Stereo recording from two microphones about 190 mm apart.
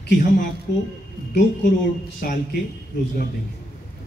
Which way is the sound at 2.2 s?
55° left (ahead or behind).